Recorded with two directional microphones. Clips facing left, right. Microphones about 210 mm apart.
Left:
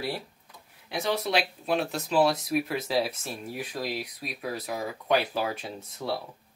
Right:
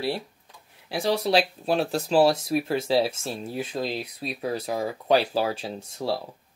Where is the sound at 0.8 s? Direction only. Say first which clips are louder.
Right 4 dB; 30° right (ahead or behind).